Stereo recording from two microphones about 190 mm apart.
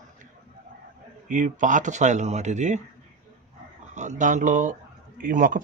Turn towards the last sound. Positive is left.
turn(degrees=-45)  # may be behind; listen again after turning